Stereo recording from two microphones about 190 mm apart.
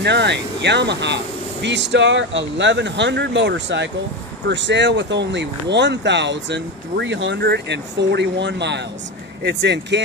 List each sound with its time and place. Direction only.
0.0 s speech: 65° right (ahead or behind)